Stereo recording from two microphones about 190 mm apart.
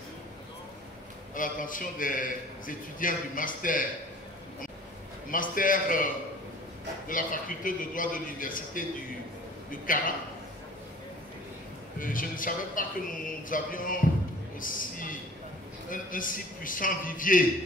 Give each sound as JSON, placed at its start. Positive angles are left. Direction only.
{"t": 1.3, "sound": "a man's voice", "side_deg": 45}
{"t": 5.3, "sound": "a man's voice", "side_deg": 45}
{"t": 7.1, "sound": "a man's voice", "side_deg": 45}
{"t": 12.0, "sound": "a man's voice", "side_deg": 45}